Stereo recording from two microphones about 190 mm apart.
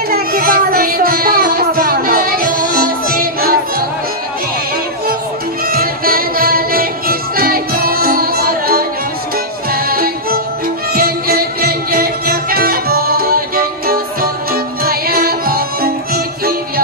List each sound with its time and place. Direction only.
0.1 s music: 50° right (ahead or behind)
5.7 s music: 50° right (ahead or behind)